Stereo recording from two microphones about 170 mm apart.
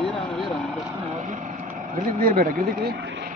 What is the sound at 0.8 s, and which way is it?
Vehicle, 20° right (ahead or behind).